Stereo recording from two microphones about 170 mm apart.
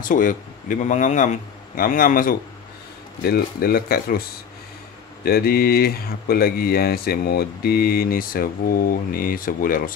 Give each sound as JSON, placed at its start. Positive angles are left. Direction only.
{"t": 0.0, "sound": "a man's voice", "side_deg": 50}
{"t": 5.2, "sound": "speech", "side_deg": 65}